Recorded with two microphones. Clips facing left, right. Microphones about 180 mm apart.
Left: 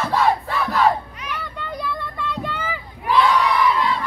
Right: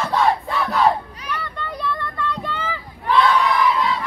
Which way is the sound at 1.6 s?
10° left (ahead or behind).